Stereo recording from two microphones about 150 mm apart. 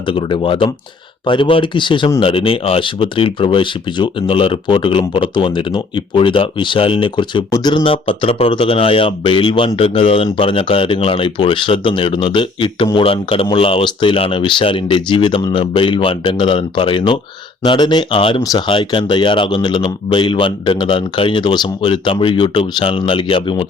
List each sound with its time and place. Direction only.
0.1 s speech: 35° left (ahead or behind)